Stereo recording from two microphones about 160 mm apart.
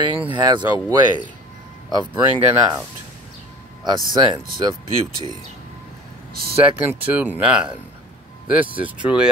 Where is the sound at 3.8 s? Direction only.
30° right (ahead or behind).